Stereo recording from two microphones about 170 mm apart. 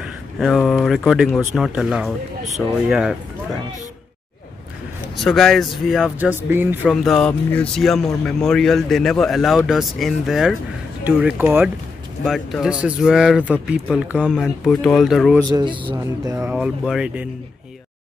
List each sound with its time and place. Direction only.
0.0 s speech: centre (ahead or behind)
5.1 s speech: centre (ahead or behind)
6.9 s speech: centre (ahead or behind)
12.3 s speech: centre (ahead or behind)
15.4 s speech: 25° right (ahead or behind)
16.0 s speech: 15° right (ahead or behind)